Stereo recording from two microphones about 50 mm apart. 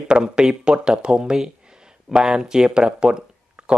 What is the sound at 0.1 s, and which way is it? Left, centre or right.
Speech, centre.